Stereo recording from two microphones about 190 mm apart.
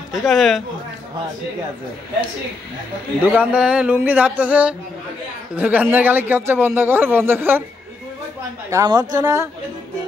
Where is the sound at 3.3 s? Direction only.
5° right (ahead or behind).